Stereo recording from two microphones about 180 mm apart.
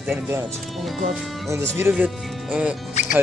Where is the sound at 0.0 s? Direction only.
10° right (ahead or behind).